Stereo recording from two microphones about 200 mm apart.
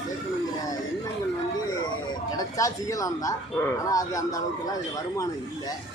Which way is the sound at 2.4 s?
15° left (ahead or behind).